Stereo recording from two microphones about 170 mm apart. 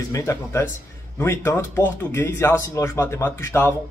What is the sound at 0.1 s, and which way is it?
Speech, 15° left (ahead or behind).